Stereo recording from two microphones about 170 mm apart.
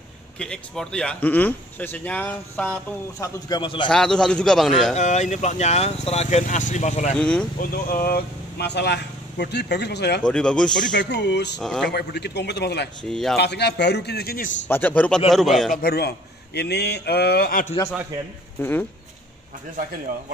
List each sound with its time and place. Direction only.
0.4 s speech: 5° left (ahead or behind)
3.4 s a man's voice: 25° left (ahead or behind)
3.9 s a man's voice: 5° left (ahead or behind)
4.9 s speech: 45° left (ahead or behind)
7.2 s speech: 5° left (ahead or behind)
7.6 s speech: 60° left (ahead or behind); by 10.2 s 80° left
10.2 s a man's voice: 5° left (ahead or behind)
11.0 s a man's voice: 80° left
13.1 s a man's voice: centre (ahead or behind)
13.4 s speech: 80° left; by 14.5 s 60° left (ahead or behind)
14.7 s a man's voice: 10° left (ahead or behind)
15.8 s speech: 70° left (ahead or behind)
18.6 s speech: 10° left (ahead or behind)